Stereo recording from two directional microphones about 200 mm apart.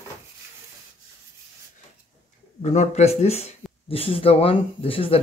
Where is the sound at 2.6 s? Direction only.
35° left (ahead or behind).